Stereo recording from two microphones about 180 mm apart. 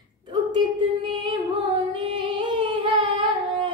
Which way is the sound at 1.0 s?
30° right (ahead or behind).